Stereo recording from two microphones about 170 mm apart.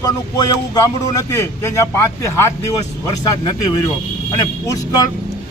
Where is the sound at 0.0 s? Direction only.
20° left (ahead or behind).